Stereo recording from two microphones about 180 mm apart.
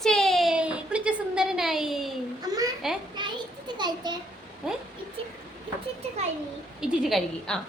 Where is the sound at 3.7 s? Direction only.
25° right (ahead or behind).